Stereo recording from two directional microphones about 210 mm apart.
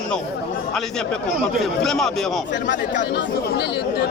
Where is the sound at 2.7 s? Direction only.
40° left (ahead or behind).